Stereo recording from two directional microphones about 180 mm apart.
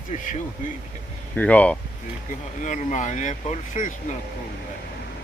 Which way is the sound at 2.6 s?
45° left (ahead or behind).